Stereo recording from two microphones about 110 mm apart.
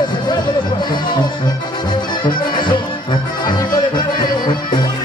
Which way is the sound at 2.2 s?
45° left (ahead or behind).